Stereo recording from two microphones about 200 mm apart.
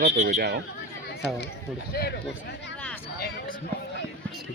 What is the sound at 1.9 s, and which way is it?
Speech, 50° left (ahead or behind).